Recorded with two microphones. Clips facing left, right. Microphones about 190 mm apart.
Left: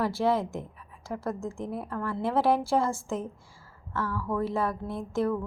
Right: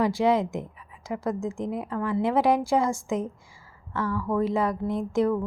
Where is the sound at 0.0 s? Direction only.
15° right (ahead or behind).